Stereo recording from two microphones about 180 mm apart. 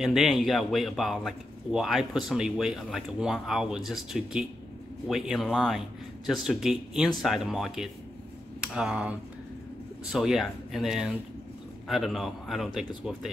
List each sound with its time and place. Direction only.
0.0 s speech: centre (ahead or behind)
10.1 s speech: centre (ahead or behind)